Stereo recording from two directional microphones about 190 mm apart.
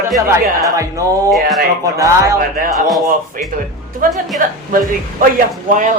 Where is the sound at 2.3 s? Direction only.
50° right (ahead or behind).